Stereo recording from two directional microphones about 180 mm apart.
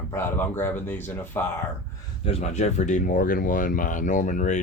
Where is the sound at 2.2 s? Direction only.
35° left (ahead or behind).